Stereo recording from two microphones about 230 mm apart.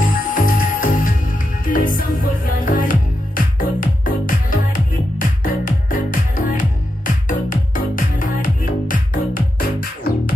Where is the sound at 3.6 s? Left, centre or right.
Left.